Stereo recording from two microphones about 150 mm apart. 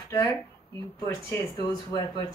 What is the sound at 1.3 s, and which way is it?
Speech, 25° left (ahead or behind).